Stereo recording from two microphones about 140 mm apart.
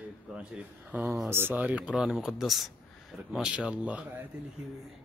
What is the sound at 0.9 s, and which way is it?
Speech, 10° right (ahead or behind).